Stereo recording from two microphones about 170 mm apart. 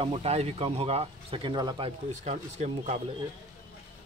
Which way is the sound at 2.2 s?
40° right (ahead or behind).